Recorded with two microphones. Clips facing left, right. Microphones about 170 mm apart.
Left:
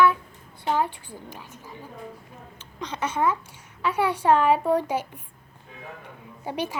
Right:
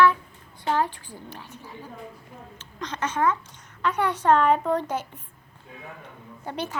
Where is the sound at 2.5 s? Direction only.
10° left (ahead or behind).